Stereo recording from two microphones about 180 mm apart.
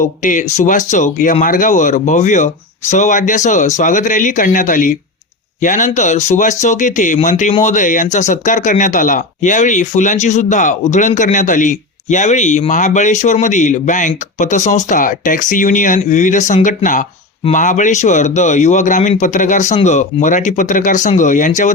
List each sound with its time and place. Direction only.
0.2 s speech: 45° left (ahead or behind)